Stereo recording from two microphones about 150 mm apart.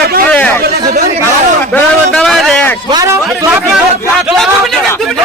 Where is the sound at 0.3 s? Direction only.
10° left (ahead or behind).